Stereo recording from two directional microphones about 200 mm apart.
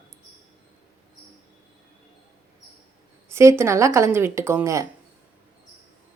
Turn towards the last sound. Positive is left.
turn(degrees=-15)  # may be behind; listen again after turning